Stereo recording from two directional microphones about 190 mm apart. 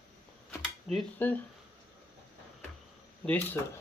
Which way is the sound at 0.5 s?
5° left (ahead or behind).